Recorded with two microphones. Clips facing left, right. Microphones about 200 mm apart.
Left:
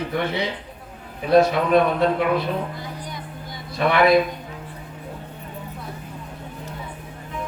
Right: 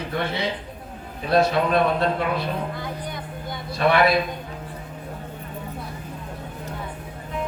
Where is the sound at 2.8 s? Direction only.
55° right (ahead or behind).